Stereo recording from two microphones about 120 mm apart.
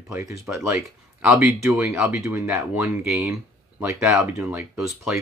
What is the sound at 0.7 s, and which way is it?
Speech, centre (ahead or behind).